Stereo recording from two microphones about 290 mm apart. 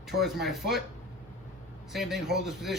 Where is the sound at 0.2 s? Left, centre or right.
Centre.